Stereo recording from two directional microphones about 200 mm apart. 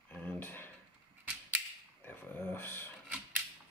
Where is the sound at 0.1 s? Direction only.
10° left (ahead or behind).